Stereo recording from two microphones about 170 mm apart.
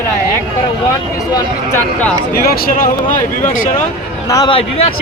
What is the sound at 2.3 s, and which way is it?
Speech, 65° left (ahead or behind).